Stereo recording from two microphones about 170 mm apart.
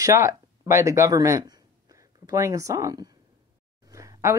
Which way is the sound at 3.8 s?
20° right (ahead or behind).